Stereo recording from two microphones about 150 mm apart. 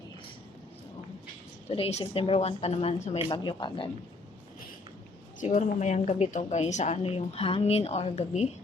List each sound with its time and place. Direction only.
1.7 s a woman's voice: 45° left (ahead or behind)
5.4 s a woman's voice: 55° left (ahead or behind)